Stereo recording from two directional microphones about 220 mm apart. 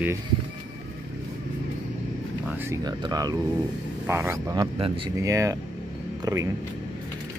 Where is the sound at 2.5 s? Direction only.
10° right (ahead or behind).